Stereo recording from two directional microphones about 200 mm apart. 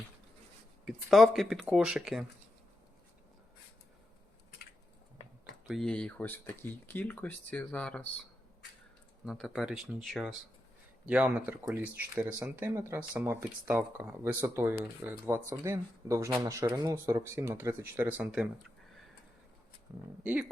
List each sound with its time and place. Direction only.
0.9 s speech: centre (ahead or behind)
5.6 s speech: centre (ahead or behind)
9.2 s speech: centre (ahead or behind)
20.2 s speech: 5° right (ahead or behind)